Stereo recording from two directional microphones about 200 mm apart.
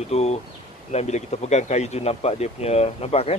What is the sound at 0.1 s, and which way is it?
Speech, 30° left (ahead or behind).